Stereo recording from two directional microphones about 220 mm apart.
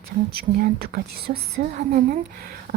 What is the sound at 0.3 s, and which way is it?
A woman's voice, 40° right (ahead or behind).